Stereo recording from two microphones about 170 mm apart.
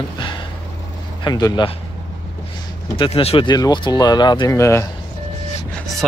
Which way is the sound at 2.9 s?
35° left (ahead or behind).